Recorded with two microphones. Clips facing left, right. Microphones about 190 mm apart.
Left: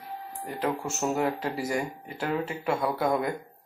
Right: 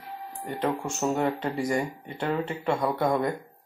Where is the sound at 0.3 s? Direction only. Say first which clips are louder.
Right 2 dB; centre (ahead or behind).